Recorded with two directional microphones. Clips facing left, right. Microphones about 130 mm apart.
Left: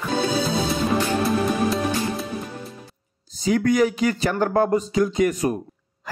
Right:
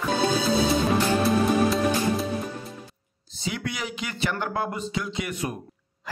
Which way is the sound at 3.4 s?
45° left (ahead or behind).